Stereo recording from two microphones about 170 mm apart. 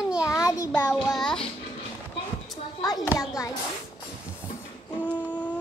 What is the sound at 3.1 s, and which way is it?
Speech, 20° left (ahead or behind).